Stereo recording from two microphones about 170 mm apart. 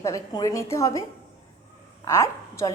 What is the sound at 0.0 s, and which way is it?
A woman's voice, 20° left (ahead or behind).